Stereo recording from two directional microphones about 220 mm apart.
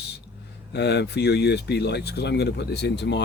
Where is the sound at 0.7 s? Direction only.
50° left (ahead or behind).